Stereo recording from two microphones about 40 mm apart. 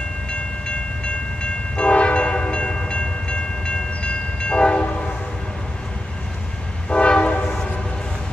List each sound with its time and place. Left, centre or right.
0.3 s train: left
6.9 s train: left